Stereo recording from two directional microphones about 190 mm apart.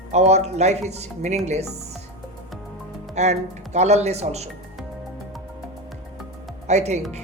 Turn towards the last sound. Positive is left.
turn(degrees=-35)  # may be behind; listen again after turning